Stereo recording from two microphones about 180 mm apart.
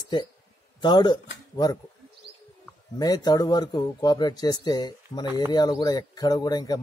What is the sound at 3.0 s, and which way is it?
Speech, 20° left (ahead or behind).